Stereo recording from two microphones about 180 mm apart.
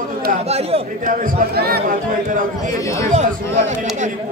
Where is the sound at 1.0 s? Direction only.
55° right (ahead or behind).